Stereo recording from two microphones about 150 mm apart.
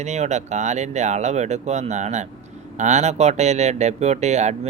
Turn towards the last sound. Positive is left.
turn(degrees=-50)  # may be behind; listen again after turning